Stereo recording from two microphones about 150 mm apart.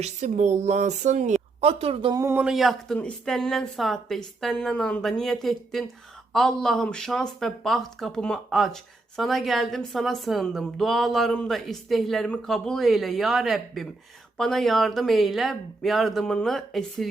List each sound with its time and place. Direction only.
0.0 s a woman's voice: 50° right (ahead or behind)
2.1 s speech: 20° right (ahead or behind)
2.4 s speech: centre (ahead or behind)